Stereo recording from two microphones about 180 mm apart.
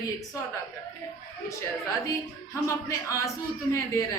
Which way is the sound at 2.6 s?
15° left (ahead or behind).